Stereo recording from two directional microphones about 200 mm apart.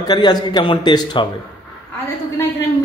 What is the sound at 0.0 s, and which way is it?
A man's voice, 20° left (ahead or behind).